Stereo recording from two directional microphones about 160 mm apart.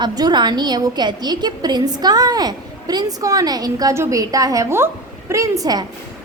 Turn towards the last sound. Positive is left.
turn(degrees=-25)  # may be behind; listen again after turning